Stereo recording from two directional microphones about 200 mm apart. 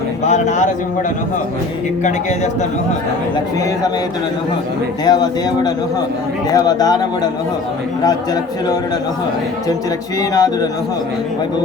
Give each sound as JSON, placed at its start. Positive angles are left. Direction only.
{"t": 0.3, "sound": "speech", "side_deg": 35}
{"t": 5.0, "sound": "speech", "side_deg": 20}
{"t": 10.2, "sound": "speech", "side_deg": 20}